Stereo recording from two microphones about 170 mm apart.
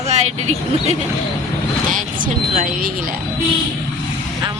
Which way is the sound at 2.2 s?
55° right (ahead or behind).